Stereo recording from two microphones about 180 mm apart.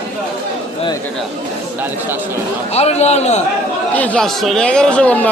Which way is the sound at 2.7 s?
35° left (ahead or behind).